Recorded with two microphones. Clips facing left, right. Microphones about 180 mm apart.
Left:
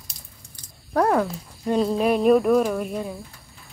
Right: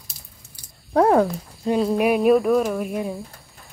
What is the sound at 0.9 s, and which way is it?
Speech, 20° right (ahead or behind).